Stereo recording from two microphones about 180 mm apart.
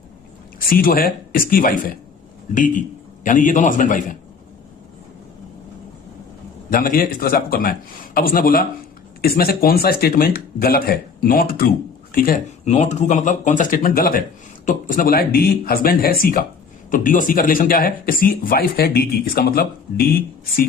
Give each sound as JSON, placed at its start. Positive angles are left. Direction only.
{"t": 0.6, "sound": "speech", "side_deg": 55}
{"t": 6.7, "sound": "speech", "side_deg": 50}
{"t": 12.6, "sound": "speech", "side_deg": 40}